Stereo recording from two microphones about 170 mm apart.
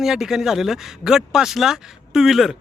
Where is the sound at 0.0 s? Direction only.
5° right (ahead or behind).